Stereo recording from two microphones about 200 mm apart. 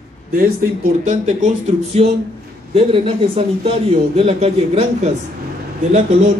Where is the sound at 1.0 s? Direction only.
40° right (ahead or behind).